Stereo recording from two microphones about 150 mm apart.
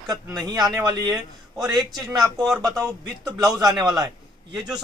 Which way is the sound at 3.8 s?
30° right (ahead or behind).